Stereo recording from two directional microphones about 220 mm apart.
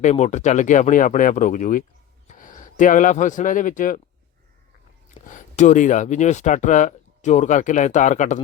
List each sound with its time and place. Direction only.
0.0 s speech: 30° left (ahead or behind)
5.2 s speech: 35° left (ahead or behind)